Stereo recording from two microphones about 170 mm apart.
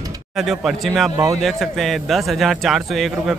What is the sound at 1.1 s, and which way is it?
Speech, 20° right (ahead or behind).